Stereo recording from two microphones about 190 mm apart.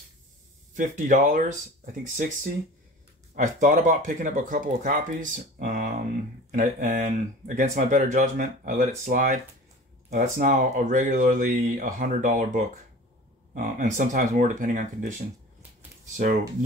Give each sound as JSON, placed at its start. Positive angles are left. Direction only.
{"t": 0.7, "sound": "speech", "side_deg": -45}